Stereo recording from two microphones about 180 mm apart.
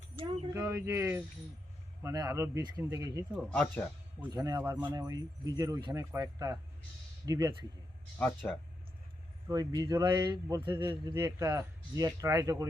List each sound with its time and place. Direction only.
0.5 s a man's voice: 15° right (ahead or behind)
3.3 s speech: 5° left (ahead or behind)
4.3 s a man's voice: 20° right (ahead or behind)
4.6 s speech: 10° right (ahead or behind)
4.9 s a man's voice: 20° right (ahead or behind)
8.2 s speech: 5° left (ahead or behind)
9.5 s a man's voice: 20° right (ahead or behind)
10.8 s a man's voice: 15° right (ahead or behind)